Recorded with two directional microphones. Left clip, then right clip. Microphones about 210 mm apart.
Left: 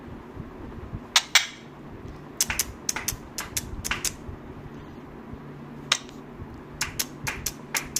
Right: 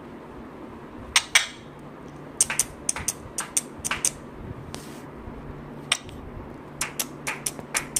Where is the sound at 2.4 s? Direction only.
40° left (ahead or behind).